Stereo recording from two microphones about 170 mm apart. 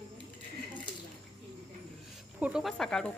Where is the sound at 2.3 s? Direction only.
5° right (ahead or behind).